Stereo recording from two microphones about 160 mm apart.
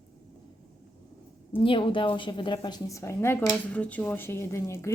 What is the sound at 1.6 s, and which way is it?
A woman's voice, 30° left (ahead or behind).